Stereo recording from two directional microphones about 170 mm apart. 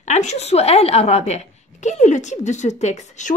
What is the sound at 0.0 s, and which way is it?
A woman's voice, 45° left (ahead or behind).